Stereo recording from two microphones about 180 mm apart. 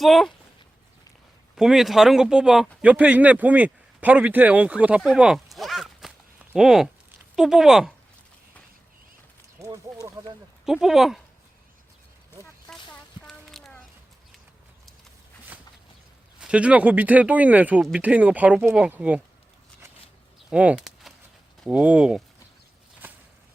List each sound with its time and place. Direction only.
0.0 s speech: centre (ahead or behind)
1.5 s speech: centre (ahead or behind)
9.6 s speech: 20° right (ahead or behind)
10.7 s speech: centre (ahead or behind)
12.7 s a sound: 5° left (ahead or behind)
16.4 s speech: 5° right (ahead or behind)
20.5 s a sound: 5° right (ahead or behind)
21.6 s speech: 5° right (ahead or behind)
23.0 s a sound: 10° right (ahead or behind)